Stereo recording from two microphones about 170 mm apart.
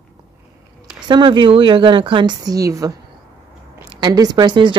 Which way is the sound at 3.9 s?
25° right (ahead or behind).